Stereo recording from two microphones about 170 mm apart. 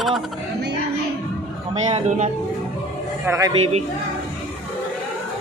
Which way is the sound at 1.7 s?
40° right (ahead or behind).